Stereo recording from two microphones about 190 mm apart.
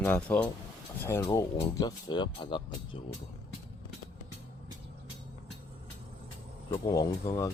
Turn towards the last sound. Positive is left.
turn(degrees=15)  # may be behind; listen again after turning